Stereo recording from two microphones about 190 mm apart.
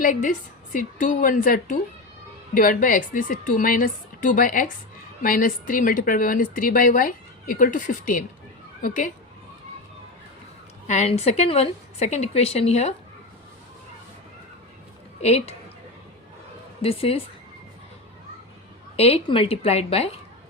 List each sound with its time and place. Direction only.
0.0 s speech: 45° left (ahead or behind)
10.8 s a woman's voice: 35° left (ahead or behind)
15.2 s a woman's voice: 35° left (ahead or behind)
16.8 s a woman's voice: 30° left (ahead or behind)
18.9 s a woman's voice: 30° left (ahead or behind)